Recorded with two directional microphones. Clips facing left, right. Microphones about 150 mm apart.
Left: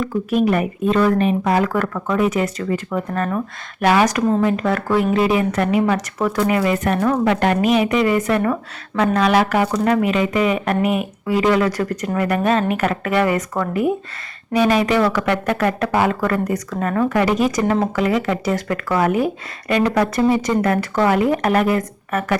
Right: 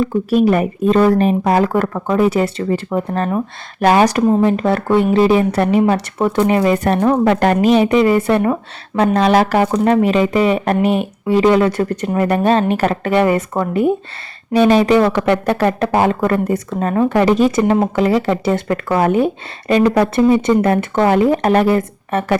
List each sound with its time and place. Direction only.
0.0 s speech: 30° right (ahead or behind)